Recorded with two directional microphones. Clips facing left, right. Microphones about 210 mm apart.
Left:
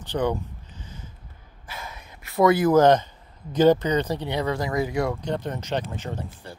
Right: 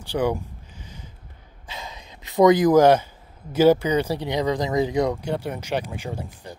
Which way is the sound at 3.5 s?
10° right (ahead or behind).